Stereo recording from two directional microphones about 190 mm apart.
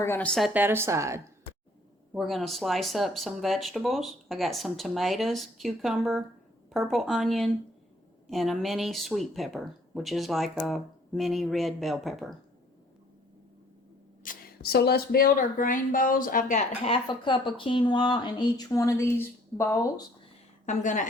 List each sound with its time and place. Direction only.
0.0 s a woman's voice: 10° left (ahead or behind); by 1.2 s 15° right (ahead or behind)
2.1 s speech: centre (ahead or behind)
14.3 s speech: 55° left (ahead or behind); by 19.9 s 15° left (ahead or behind)
20.7 s speech: 40° left (ahead or behind)